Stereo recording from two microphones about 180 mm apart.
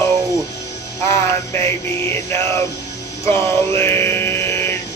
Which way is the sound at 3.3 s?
10° left (ahead or behind).